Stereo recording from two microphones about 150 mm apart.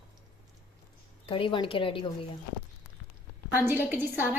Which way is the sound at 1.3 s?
35° left (ahead or behind).